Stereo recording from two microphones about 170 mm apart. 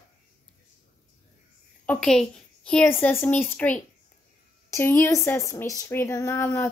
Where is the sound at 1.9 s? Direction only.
5° left (ahead or behind).